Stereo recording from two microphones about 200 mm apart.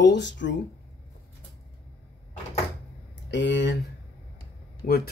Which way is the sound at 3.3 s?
60° left (ahead or behind).